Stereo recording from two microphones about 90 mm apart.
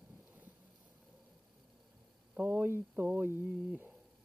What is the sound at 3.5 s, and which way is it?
Humming, 15° right (ahead or behind).